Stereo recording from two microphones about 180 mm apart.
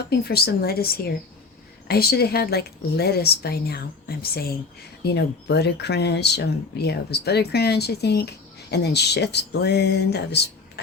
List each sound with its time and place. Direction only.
0.0 s a woman's voice: 60° left (ahead or behind)